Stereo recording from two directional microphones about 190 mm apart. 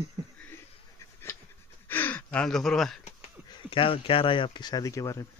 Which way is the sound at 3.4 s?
25° left (ahead or behind).